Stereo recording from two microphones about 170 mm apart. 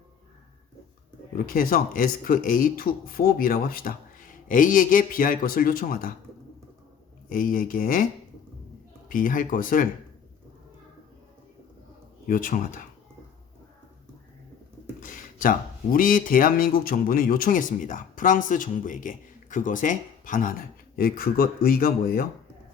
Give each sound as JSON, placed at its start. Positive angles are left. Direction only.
{"t": 1.5, "sound": "speech", "side_deg": 55}
{"t": 7.3, "sound": "speech", "side_deg": 55}
{"t": 9.0, "sound": "speech", "side_deg": 50}
{"t": 12.2, "sound": "speech", "side_deg": 55}
{"t": 15.0, "sound": "speech", "side_deg": 55}